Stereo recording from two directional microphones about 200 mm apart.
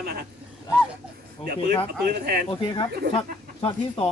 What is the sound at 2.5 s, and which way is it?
Speech, 25° left (ahead or behind).